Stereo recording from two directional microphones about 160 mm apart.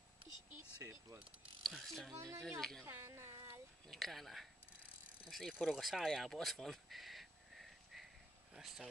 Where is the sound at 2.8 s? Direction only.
15° right (ahead or behind).